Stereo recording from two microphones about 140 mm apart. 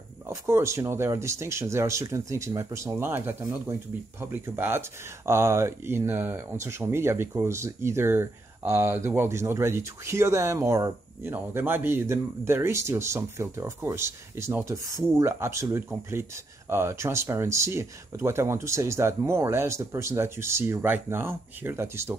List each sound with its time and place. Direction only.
0.3 s speech: 20° right (ahead or behind)